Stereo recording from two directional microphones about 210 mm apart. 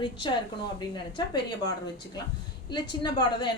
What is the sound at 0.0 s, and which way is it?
A woman's voice, 20° left (ahead or behind).